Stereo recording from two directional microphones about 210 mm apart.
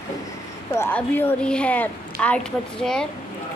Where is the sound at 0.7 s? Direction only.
10° left (ahead or behind).